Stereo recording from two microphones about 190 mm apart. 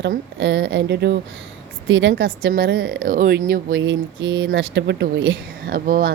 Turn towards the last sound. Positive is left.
turn(degrees=-50)  # may be behind; listen again after turning